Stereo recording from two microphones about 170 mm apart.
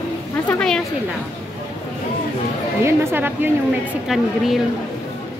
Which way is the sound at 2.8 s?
10° right (ahead or behind).